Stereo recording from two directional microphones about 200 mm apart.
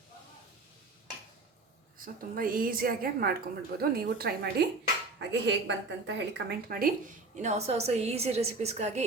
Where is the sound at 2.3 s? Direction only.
45° right (ahead or behind).